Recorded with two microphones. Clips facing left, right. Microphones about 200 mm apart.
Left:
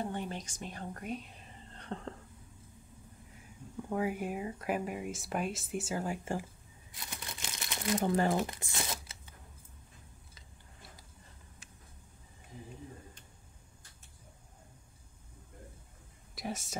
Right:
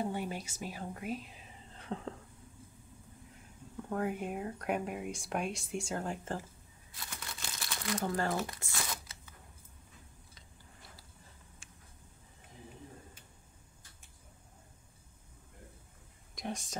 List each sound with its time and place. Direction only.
0.0 s music: 10° right (ahead or behind)
3.9 s speech: 5° left (ahead or behind)
6.9 s crumpling: 20° left (ahead or behind)
16.3 s speech: 5° left (ahead or behind)